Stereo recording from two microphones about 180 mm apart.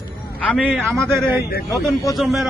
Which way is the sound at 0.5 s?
Centre (ahead or behind).